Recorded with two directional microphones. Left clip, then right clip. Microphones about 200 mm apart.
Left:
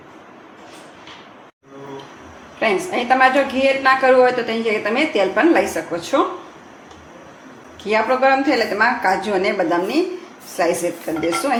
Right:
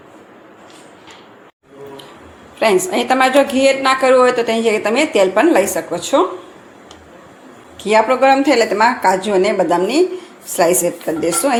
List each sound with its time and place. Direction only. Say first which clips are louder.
2.6 s a woman's voice: right 5 dB; 35° right (ahead or behind)
7.8 s a woman's voice: right 4 dB; 30° right (ahead or behind)